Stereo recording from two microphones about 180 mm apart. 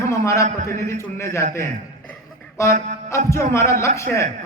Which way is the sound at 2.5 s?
15° left (ahead or behind).